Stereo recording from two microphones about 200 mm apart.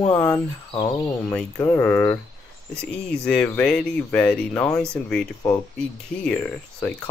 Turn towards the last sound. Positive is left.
turn(degrees=5)  # may be behind; listen again after turning